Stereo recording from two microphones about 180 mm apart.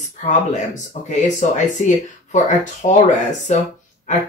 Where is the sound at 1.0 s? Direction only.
45° left (ahead or behind).